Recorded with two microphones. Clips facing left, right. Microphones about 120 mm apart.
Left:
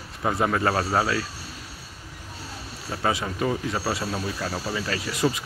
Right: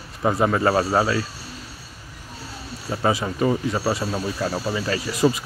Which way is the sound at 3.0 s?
5° right (ahead or behind).